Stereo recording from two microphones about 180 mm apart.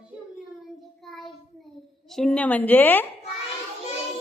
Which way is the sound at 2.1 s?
5° left (ahead or behind).